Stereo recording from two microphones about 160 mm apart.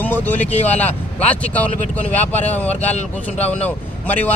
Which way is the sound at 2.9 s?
45° left (ahead or behind).